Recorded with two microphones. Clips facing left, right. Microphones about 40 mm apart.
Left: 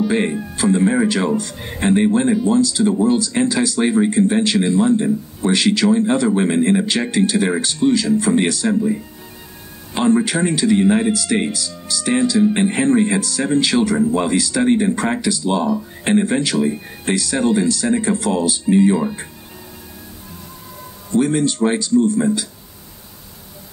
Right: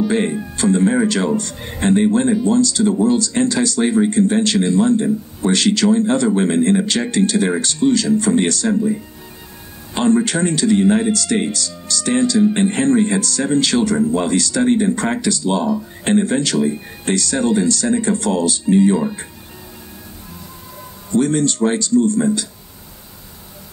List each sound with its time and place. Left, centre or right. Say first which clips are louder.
0.0 s speech: even; centre
21.1 s speech: even; centre